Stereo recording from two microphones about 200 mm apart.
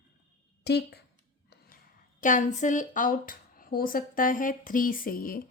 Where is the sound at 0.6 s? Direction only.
55° left (ahead or behind).